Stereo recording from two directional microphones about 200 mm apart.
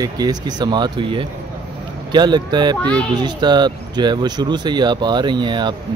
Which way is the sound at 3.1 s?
20° right (ahead or behind).